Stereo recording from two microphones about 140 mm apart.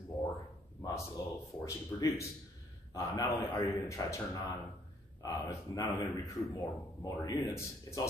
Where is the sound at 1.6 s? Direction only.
20° left (ahead or behind).